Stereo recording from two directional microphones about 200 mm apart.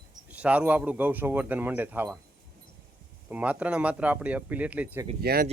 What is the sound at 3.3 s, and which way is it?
Speech, 5° right (ahead or behind).